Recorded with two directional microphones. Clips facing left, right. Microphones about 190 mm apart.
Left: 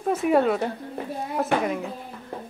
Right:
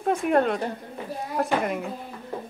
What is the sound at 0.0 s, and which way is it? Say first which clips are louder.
A woman's voice: left 1 dB; 5° left (ahead or behind).